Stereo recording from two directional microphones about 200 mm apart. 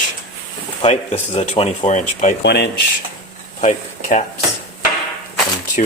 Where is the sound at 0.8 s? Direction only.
30° left (ahead or behind).